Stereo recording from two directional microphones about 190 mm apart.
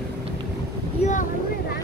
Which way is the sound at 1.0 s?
40° left (ahead or behind).